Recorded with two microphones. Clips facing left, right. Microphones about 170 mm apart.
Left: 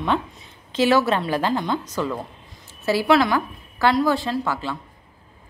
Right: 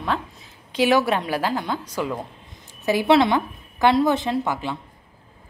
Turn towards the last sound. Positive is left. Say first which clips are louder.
# right 1 dB
turn(degrees=-20)  # may be behind; listen again after turning